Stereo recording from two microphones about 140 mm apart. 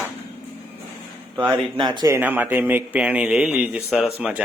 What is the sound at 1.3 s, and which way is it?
Speech, 10° right (ahead or behind).